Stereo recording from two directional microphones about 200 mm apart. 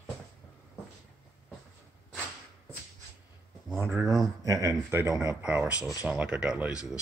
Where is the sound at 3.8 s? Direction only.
15° right (ahead or behind).